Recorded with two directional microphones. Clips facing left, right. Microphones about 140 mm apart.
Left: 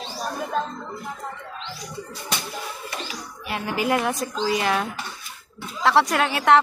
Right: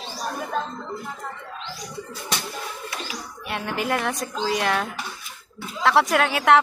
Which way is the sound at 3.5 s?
Centre (ahead or behind).